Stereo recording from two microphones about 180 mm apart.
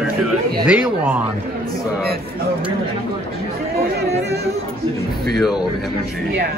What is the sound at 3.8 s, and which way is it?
Speech, 65° right (ahead or behind).